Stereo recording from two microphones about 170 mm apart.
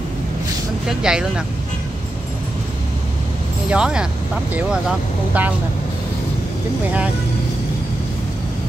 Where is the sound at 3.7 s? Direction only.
5° right (ahead or behind).